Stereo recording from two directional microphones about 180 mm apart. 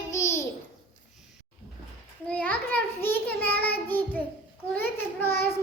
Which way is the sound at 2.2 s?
10° left (ahead or behind).